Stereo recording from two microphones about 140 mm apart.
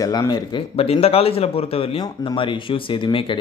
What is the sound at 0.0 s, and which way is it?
Speech, 25° left (ahead or behind).